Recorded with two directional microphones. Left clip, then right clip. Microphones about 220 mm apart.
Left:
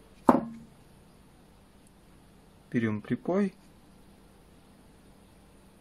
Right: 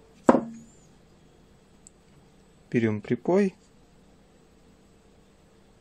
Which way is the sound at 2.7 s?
20° right (ahead or behind).